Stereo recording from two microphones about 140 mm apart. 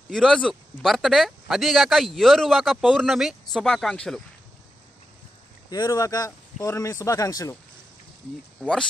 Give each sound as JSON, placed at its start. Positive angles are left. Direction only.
{"t": 0.1, "sound": "speech", "side_deg": 5}
{"t": 5.7, "sound": "speech", "side_deg": 25}